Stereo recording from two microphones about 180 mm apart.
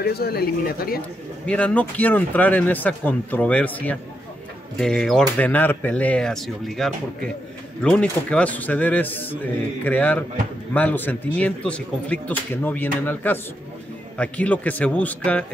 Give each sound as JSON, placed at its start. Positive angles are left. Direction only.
{"t": 0.0, "sound": "speech", "side_deg": 60}
{"t": 1.4, "sound": "a man's voice", "side_deg": 5}